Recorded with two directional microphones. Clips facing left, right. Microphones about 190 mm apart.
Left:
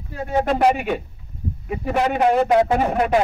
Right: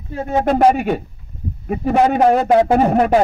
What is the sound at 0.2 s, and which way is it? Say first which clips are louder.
A man's voice: right 4 dB; 40° right (ahead or behind).